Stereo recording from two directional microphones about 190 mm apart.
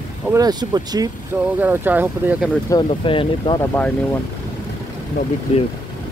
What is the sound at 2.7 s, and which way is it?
Speech, 25° left (ahead or behind).